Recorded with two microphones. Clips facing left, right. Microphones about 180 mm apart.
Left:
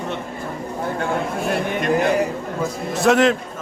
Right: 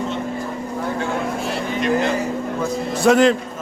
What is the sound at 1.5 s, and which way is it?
Vehicle, 50° left (ahead or behind).